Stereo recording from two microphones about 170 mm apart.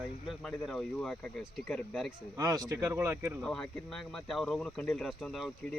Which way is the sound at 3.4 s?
5° left (ahead or behind).